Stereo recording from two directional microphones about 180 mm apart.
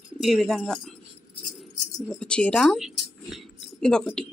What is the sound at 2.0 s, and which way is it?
Speech, 5° left (ahead or behind).